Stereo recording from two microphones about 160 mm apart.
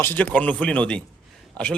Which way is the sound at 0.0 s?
10° left (ahead or behind).